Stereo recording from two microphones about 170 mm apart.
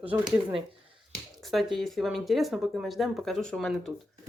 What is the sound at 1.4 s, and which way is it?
Speech, centre (ahead or behind).